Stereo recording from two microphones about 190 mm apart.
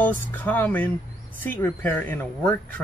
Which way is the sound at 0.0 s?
10° left (ahead or behind).